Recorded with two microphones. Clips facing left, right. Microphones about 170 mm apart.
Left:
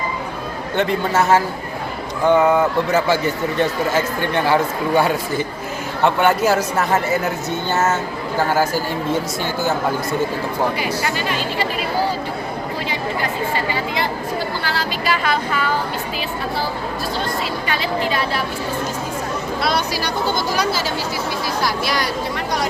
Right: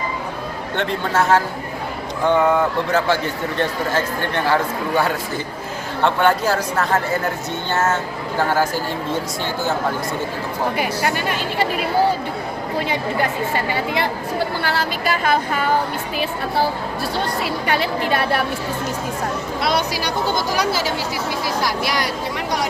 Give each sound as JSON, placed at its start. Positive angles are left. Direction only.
{"t": 0.8, "sound": "a woman's voice", "side_deg": 5}
{"t": 10.8, "sound": "a woman's voice", "side_deg": -55}
{"t": 13.9, "sound": "a woman's voice", "side_deg": -60}
{"t": 17.4, "sound": "a woman's voice", "side_deg": -60}
{"t": 19.6, "sound": "speech", "side_deg": -20}